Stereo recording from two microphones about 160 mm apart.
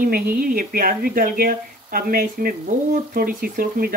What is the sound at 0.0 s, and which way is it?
Speech, 65° right (ahead or behind).